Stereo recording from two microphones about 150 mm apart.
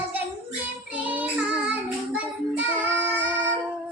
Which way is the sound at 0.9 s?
10° right (ahead or behind).